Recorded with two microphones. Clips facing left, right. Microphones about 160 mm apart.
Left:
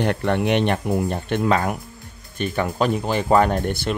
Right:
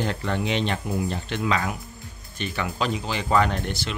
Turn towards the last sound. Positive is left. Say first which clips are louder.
# left 6 dB
turn(degrees=50)  # may be behind; listen again after turning